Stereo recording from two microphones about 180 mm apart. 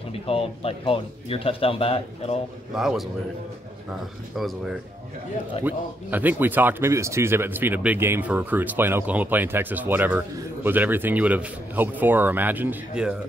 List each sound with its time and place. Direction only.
0.3 s speech: 30° left (ahead or behind)
2.7 s speech: centre (ahead or behind)
4.4 s speech: centre (ahead or behind)